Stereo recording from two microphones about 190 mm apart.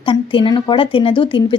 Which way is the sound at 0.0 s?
25° left (ahead or behind).